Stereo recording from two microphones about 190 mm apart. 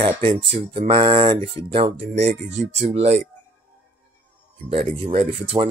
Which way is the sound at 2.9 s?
35° right (ahead or behind).